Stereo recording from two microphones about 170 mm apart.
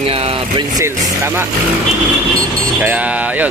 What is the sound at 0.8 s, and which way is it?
Speech, 15° right (ahead or behind).